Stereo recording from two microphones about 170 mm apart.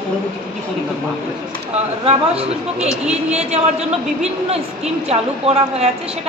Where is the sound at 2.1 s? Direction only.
35° right (ahead or behind).